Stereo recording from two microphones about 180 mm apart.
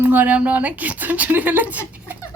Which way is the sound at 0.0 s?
10° right (ahead or behind).